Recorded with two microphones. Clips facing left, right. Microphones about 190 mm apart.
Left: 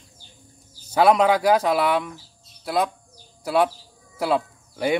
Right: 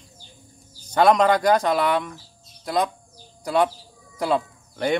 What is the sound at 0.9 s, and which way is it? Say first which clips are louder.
Speech: even; 5° left (ahead or behind).